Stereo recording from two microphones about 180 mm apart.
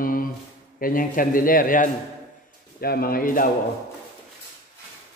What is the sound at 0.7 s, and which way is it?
A man's voice, 50° left (ahead or behind).